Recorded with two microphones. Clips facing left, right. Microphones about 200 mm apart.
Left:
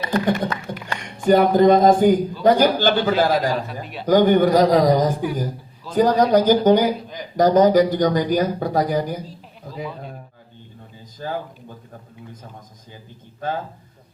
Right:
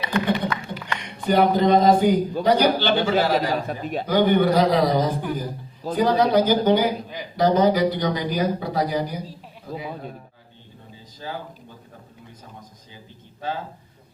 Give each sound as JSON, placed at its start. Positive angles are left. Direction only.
{"t": 0.0, "sound": "a sound", "side_deg": 45}
{"t": 0.9, "sound": "speech", "side_deg": 45}
{"t": 11.2, "sound": "speech", "side_deg": 50}
{"t": 13.4, "sound": "speech", "side_deg": 50}